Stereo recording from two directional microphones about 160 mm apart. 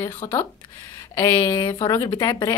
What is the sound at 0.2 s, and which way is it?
A woman's voice, 20° left (ahead or behind).